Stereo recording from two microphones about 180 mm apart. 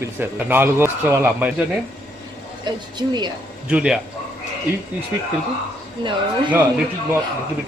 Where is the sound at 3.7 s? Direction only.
5° right (ahead or behind).